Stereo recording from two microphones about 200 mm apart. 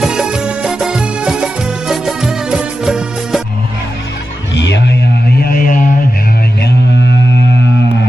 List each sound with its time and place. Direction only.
0.0 s music: 5° right (ahead or behind)
4.5 s music: 60° left (ahead or behind)
5.4 s a sound: 45° left (ahead or behind)